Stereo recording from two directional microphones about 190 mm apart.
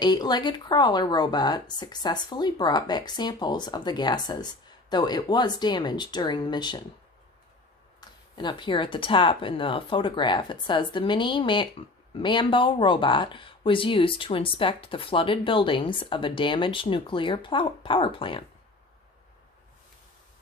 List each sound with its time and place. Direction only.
0.0 s speech: 20° left (ahead or behind)
8.0 s a sound: 20° left (ahead or behind)
8.4 s speech: 25° left (ahead or behind)